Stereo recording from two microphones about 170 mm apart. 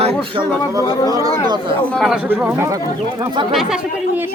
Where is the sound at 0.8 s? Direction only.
30° left (ahead or behind).